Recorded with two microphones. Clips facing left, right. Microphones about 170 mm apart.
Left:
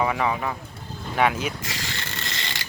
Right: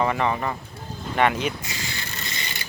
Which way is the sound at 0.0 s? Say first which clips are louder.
Right 1 dB; 5° left (ahead or behind).